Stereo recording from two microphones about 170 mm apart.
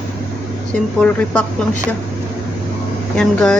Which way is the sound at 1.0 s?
10° left (ahead or behind).